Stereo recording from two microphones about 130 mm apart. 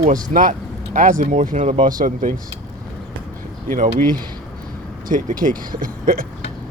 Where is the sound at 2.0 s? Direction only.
90° right.